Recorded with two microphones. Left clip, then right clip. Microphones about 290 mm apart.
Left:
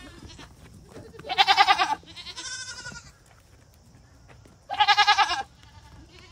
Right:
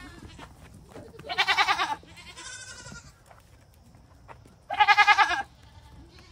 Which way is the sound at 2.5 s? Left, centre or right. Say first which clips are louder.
Left 6 dB; centre.